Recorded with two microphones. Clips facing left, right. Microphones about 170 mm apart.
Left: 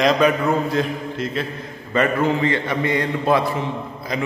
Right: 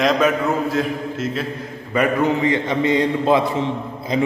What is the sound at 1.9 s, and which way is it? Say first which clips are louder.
A man's voice: right 1 dB; 15° right (ahead or behind).